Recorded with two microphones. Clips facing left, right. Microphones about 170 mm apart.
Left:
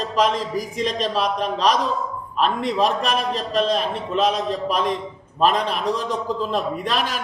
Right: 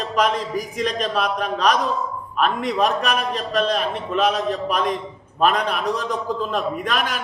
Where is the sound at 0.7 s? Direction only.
35° left (ahead or behind).